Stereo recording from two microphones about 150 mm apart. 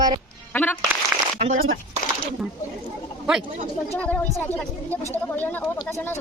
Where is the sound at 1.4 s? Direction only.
60° right (ahead or behind).